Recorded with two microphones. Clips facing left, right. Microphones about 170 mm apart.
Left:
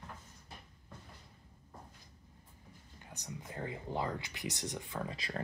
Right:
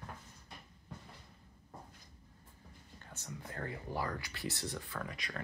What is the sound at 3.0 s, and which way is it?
Speech, 15° left (ahead or behind).